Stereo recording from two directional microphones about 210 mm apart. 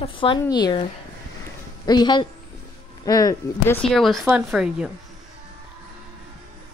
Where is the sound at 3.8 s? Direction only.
Centre (ahead or behind).